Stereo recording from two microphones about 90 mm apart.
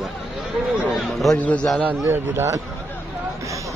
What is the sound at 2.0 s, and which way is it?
Speech, 30° right (ahead or behind).